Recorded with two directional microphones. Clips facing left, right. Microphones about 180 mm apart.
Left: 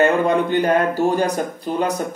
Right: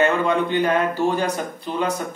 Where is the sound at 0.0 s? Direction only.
40° left (ahead or behind).